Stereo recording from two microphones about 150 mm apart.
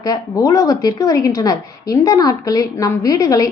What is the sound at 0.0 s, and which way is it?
A woman's voice, 25° left (ahead or behind).